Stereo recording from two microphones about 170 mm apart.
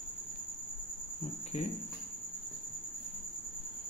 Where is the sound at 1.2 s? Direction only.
40° left (ahead or behind).